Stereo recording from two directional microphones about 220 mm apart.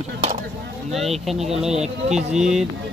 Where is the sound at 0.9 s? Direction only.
Centre (ahead or behind).